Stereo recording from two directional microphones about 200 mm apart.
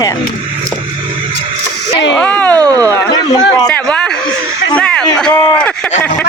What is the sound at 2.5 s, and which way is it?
Speech, 20° right (ahead or behind).